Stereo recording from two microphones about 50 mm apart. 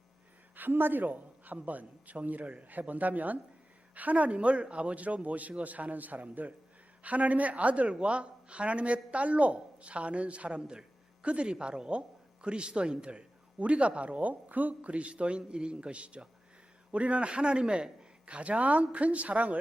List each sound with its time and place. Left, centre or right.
0.5 s a woman's voice: right